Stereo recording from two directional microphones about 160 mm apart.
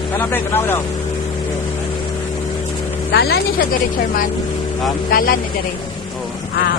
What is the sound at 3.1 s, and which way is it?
Speech, 80° left.